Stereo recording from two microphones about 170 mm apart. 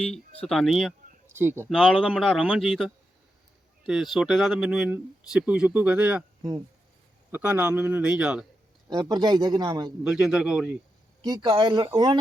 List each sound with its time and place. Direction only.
0.0 s speech: 5° left (ahead or behind)
1.4 s a man's voice: 15° right (ahead or behind)
1.7 s speech: centre (ahead or behind)
7.3 s a man's voice: 10° right (ahead or behind)
8.9 s a man's voice: 20° right (ahead or behind)
10.0 s speech: 5° right (ahead or behind)
11.2 s a man's voice: 25° right (ahead or behind)